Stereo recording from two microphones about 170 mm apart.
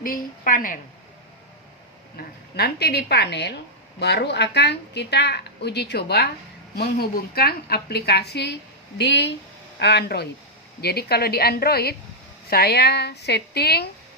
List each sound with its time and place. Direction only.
0.0 s a woman's voice: 55° left (ahead or behind)
2.1 s a woman's voice: 65° left (ahead or behind)
9.0 s speech: 90° left
9.7 s a woman's voice: 75° left (ahead or behind)